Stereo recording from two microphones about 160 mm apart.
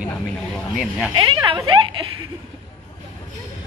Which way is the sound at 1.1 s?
25° right (ahead or behind).